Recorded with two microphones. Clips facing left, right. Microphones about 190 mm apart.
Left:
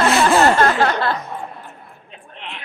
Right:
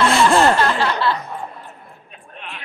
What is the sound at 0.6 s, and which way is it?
Chuckle, 50° left (ahead or behind).